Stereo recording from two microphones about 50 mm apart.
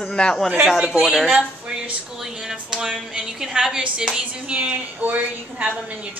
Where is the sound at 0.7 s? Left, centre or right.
Centre; by 5.7 s right.